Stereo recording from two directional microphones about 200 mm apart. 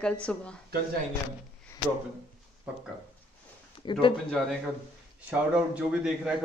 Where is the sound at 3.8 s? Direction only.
25° left (ahead or behind).